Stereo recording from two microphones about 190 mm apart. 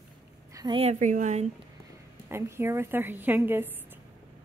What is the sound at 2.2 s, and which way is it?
A woman's voice, 15° right (ahead or behind).